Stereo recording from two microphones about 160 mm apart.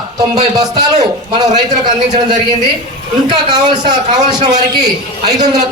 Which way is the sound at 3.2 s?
25° right (ahead or behind).